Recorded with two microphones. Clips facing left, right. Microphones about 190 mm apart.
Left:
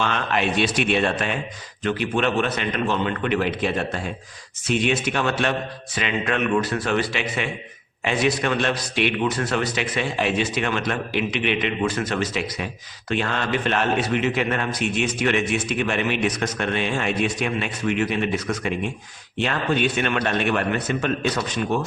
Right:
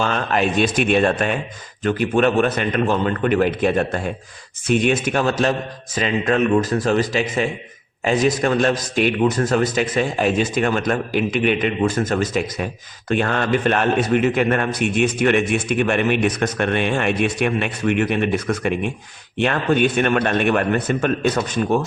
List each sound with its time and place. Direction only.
0.0 s a man's voice: 40° right (ahead or behind)
5.2 s a man's voice: 40° right (ahead or behind)